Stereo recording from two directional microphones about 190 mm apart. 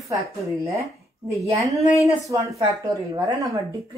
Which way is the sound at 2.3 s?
20° right (ahead or behind).